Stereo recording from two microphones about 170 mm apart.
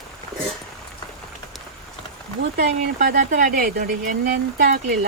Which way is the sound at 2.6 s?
55° right (ahead or behind).